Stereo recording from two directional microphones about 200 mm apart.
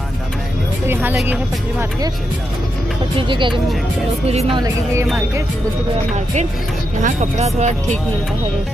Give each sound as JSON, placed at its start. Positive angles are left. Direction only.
{"t": 0.8, "sound": "speech", "side_deg": -10}
{"t": 3.2, "sound": "speech", "side_deg": -25}
{"t": 7.0, "sound": "speech", "side_deg": -35}